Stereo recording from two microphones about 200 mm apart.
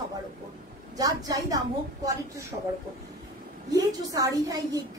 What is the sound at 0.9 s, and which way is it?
Speech, 15° right (ahead or behind).